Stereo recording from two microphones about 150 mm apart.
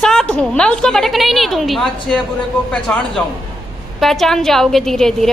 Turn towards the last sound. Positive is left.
turn(degrees=0)  # may be behind; listen again after turning